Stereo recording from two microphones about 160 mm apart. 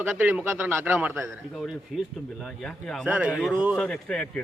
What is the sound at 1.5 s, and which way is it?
Speech, centre (ahead or behind).